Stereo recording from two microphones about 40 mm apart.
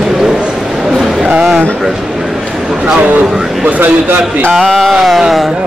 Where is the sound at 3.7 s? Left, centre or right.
Right.